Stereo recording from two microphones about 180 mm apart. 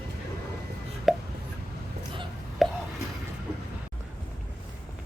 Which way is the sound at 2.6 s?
Centre (ahead or behind).